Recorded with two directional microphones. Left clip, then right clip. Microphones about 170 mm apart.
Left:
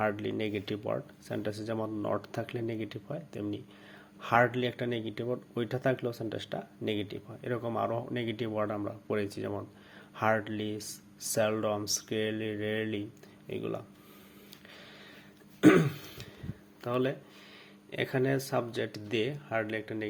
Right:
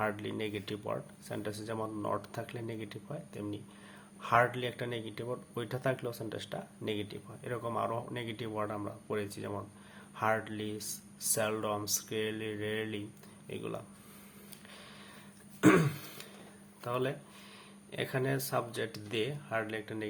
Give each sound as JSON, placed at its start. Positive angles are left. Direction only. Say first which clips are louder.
{"t": 0.0, "sound": "speech", "louder": "left 4 dB", "side_deg": 20}
{"t": 15.6, "sound": "throat clearing", "louder": "left 3 dB", "side_deg": 15}
{"t": 16.8, "sound": "speech", "louder": "left 3 dB", "side_deg": 25}